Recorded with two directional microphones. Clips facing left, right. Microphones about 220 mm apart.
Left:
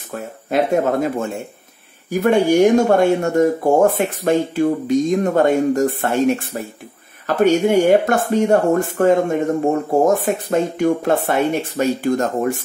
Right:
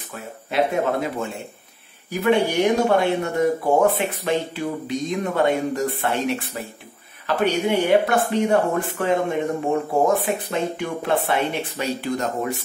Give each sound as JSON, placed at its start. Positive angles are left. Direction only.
{"t": 0.1, "sound": "speech", "side_deg": 45}